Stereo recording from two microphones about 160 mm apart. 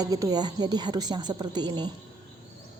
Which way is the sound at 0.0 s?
25° right (ahead or behind).